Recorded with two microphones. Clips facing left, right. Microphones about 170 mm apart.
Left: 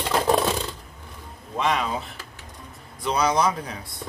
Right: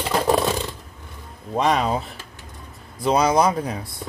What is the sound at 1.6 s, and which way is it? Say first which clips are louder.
Speech: right 4 dB; 40° right (ahead or behind).